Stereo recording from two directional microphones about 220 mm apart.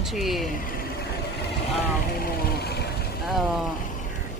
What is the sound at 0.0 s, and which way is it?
Speech, centre (ahead or behind).